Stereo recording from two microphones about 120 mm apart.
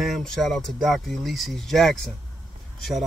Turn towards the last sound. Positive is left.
turn(degrees=0)  # may be behind; listen again after turning